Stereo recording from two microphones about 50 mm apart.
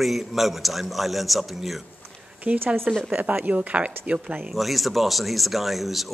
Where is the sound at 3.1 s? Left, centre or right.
Right.